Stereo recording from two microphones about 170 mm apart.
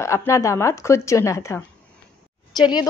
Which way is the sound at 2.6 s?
25° left (ahead or behind).